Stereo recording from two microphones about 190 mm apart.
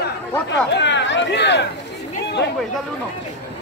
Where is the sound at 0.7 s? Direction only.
70° left (ahead or behind).